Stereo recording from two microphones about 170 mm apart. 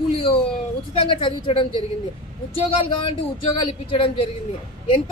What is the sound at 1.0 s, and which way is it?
Speech, 30° left (ahead or behind).